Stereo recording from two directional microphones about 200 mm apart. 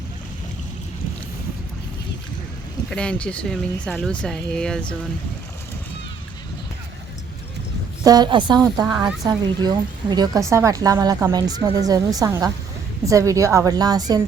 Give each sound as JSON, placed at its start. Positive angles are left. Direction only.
{"t": 2.9, "sound": "speech", "side_deg": 5}
{"t": 8.0, "sound": "a woman's voice", "side_deg": -20}